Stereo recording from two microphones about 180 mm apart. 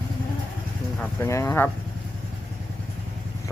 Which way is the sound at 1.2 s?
15° left (ahead or behind).